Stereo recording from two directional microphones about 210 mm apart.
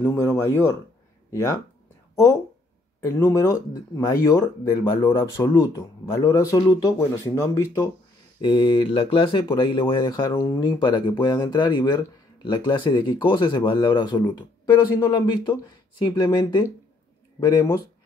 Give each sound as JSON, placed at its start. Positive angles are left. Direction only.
{"t": 0.0, "sound": "speech", "side_deg": 10}
{"t": 3.1, "sound": "speech", "side_deg": 15}